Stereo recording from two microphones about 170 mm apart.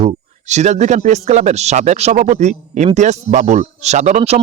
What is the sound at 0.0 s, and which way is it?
Speech, 40° right (ahead or behind).